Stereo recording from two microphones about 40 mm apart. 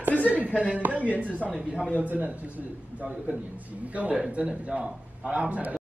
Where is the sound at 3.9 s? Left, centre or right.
Right.